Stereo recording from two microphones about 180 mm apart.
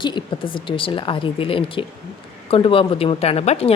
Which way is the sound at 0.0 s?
25° left (ahead or behind).